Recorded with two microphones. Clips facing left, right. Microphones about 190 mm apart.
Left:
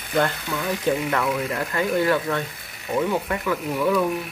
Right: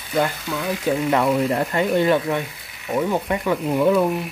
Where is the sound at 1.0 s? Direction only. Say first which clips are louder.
Right 5 dB; 20° right (ahead or behind).